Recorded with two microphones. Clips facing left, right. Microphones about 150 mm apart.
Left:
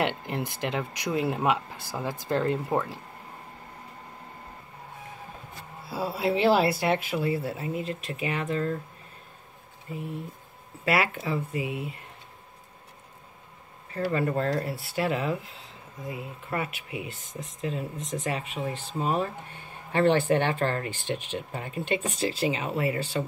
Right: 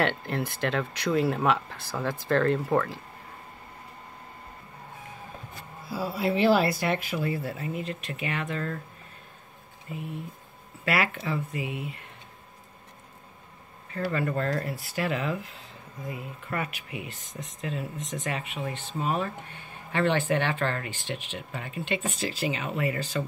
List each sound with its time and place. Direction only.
0.0 s speech: 15° left (ahead or behind)
5.9 s speech: 25° left (ahead or behind)
10.9 s speech: 30° left (ahead or behind)
13.9 s speech: 30° left (ahead or behind)